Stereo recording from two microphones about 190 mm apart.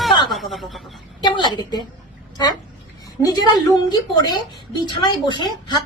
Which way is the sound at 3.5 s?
20° left (ahead or behind).